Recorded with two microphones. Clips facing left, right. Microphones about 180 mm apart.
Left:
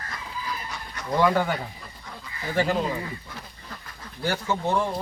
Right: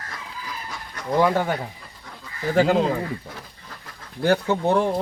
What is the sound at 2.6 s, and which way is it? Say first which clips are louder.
Speech: right 6 dB; 90° right.